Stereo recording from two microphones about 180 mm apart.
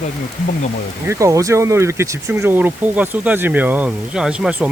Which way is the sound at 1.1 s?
15° right (ahead or behind).